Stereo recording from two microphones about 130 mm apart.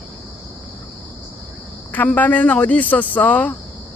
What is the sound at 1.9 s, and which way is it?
Speech, 15° left (ahead or behind).